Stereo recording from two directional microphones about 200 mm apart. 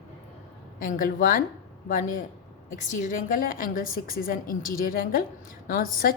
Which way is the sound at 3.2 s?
45° left (ahead or behind).